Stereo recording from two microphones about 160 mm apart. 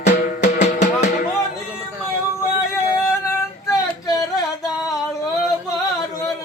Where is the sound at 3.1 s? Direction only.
20° left (ahead or behind).